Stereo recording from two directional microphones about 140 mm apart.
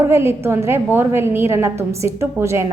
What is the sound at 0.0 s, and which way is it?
A woman's voice, 20° right (ahead or behind).